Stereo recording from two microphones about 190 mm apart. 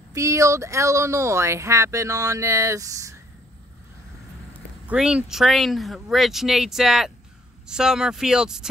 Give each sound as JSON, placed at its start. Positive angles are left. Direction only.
{"t": 0.1, "sound": "speech", "side_deg": -15}
{"t": 4.8, "sound": "speech", "side_deg": -5}